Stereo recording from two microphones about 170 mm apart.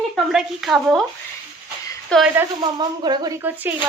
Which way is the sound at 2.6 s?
25° right (ahead or behind).